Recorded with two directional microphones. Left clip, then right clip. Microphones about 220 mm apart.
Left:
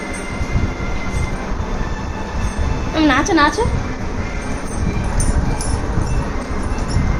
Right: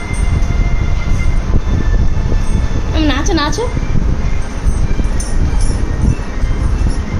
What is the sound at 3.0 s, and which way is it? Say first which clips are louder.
Music: left 2 dB; 15° right (ahead or behind).